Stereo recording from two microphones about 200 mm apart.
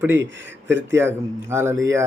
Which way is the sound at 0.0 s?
10° right (ahead or behind).